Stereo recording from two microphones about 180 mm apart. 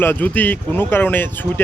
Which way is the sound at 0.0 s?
10° left (ahead or behind).